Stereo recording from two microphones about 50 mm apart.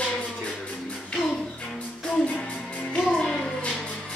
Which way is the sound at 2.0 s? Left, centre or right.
Centre.